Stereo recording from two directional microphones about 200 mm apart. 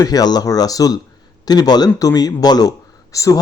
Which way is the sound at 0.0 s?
20° left (ahead or behind).